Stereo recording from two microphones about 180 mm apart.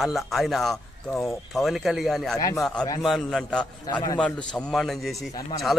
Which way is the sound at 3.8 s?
25° left (ahead or behind).